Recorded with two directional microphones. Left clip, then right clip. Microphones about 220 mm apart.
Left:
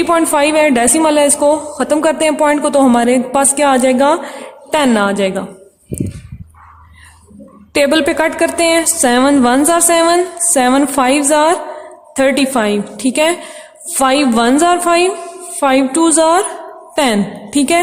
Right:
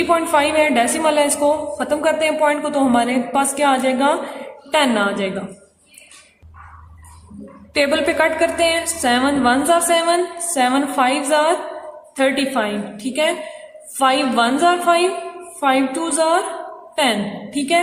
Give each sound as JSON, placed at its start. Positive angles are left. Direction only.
{"t": 0.1, "sound": "a woman's voice", "side_deg": 45}
{"t": 7.7, "sound": "a woman's voice", "side_deg": 50}